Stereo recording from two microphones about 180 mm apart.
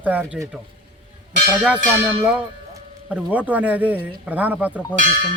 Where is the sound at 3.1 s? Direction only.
10° right (ahead or behind).